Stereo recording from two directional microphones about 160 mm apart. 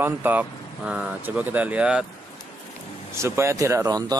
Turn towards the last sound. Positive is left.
turn(degrees=-25)  # may be behind; listen again after turning